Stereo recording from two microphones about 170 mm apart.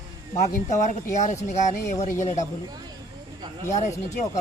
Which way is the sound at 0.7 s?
45° left (ahead or behind).